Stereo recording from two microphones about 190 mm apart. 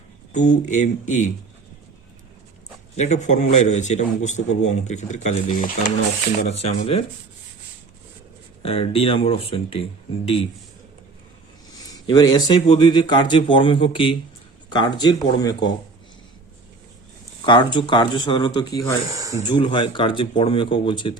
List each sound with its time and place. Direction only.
0.3 s a man's voice: 40° left (ahead or behind)
2.9 s a man's voice: 35° left (ahead or behind)
8.6 s speech: 30° left (ahead or behind)
11.9 s speech: 20° left (ahead or behind)
17.4 s speech: 25° left (ahead or behind)
19.1 s speech: 20° right (ahead or behind)
19.5 s speech: 25° left (ahead or behind)